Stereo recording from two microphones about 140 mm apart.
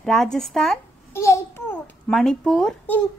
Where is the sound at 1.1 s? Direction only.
20° left (ahead or behind).